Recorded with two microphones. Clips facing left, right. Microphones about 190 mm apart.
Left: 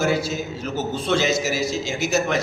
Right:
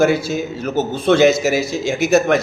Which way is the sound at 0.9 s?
55° right (ahead or behind).